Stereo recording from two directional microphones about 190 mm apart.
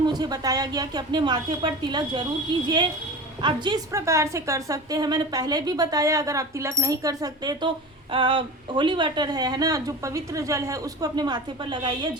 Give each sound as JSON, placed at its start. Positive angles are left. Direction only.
{"t": 0.0, "sound": "a woman's voice", "side_deg": -20}
{"t": 3.4, "sound": "a woman's voice", "side_deg": -25}